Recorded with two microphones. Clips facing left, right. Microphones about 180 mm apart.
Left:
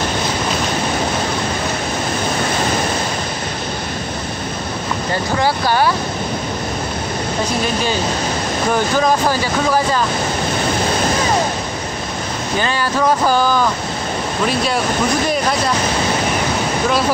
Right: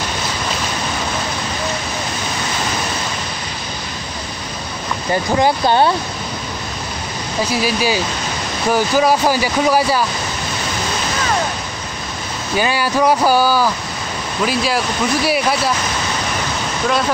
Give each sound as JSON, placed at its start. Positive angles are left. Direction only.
{"t": 5.4, "sound": "speech", "side_deg": -25}
{"t": 7.5, "sound": "speech", "side_deg": -5}
{"t": 12.5, "sound": "speech", "side_deg": -10}